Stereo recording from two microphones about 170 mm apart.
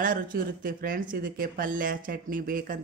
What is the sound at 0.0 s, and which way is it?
Speech, 55° right (ahead or behind).